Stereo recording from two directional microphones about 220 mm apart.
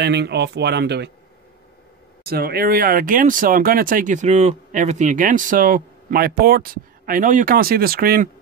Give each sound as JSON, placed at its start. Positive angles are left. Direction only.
{"t": 0.0, "sound": "speech", "side_deg": -50}
{"t": 2.2, "sound": "speech", "side_deg": -45}